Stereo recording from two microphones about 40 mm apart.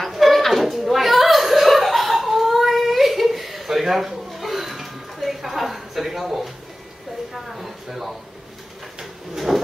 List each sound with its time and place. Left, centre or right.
0.0 s chuckle: centre
7.3 s speech: centre
9.3 s drawer open or close: centre